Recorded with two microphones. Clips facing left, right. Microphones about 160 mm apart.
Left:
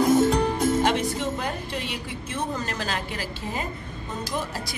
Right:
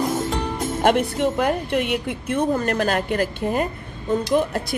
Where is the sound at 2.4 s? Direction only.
55° right (ahead or behind).